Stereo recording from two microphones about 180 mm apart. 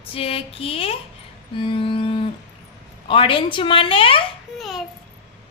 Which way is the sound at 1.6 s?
30° left (ahead or behind).